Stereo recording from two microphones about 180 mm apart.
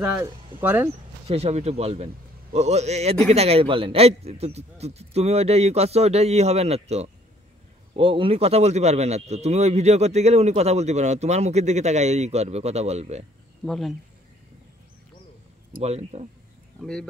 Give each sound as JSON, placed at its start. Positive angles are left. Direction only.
{"t": 0.0, "sound": "speech", "side_deg": -10}
{"t": 1.2, "sound": "a man's voice", "side_deg": -35}
{"t": 13.7, "sound": "speech", "side_deg": 0}
{"t": 15.8, "sound": "a man's voice", "side_deg": -35}
{"t": 16.8, "sound": "speech", "side_deg": 5}